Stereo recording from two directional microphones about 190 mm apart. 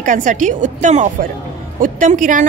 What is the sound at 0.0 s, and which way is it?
A woman's voice, 40° right (ahead or behind).